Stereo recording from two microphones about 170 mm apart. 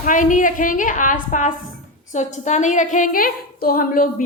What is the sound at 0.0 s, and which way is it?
A woman's voice, 50° left (ahead or behind).